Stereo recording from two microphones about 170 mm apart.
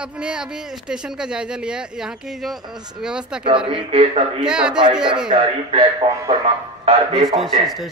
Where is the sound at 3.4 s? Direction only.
35° right (ahead or behind).